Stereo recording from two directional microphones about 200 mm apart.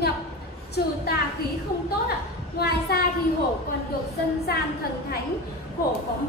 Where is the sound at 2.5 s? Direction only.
50° left (ahead or behind).